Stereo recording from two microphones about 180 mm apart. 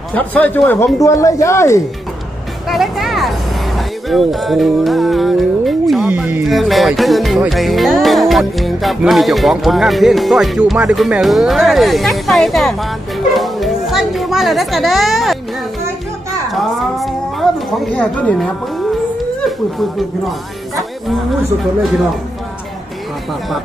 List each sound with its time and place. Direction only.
0.1 s speech: 10° left (ahead or behind)
2.7 s speech: centre (ahead or behind)
13.3 s children playing: centre (ahead or behind)
16.5 s cat: centre (ahead or behind)
17.9 s speech: 10° left (ahead or behind)